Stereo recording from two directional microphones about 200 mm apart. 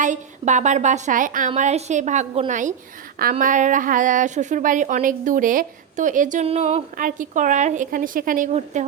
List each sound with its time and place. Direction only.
0.0 s a woman's voice: 35° right (ahead or behind)